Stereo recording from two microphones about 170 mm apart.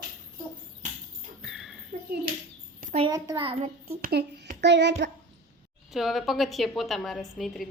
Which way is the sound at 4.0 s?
65° right (ahead or behind).